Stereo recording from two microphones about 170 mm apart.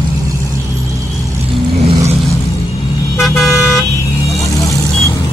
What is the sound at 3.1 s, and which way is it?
Vehicle, centre (ahead or behind).